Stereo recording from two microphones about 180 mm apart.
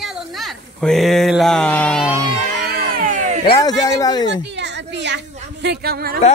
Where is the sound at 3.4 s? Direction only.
25° left (ahead or behind).